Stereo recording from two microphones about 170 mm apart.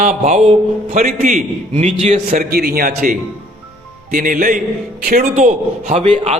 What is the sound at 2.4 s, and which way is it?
A man's voice, 65° right (ahead or behind).